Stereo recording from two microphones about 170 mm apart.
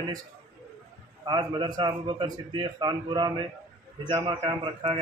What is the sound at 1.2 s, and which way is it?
A man's voice, 25° right (ahead or behind).